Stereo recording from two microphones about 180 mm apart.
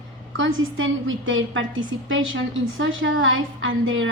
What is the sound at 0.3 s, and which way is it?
A woman's voice, 90° right.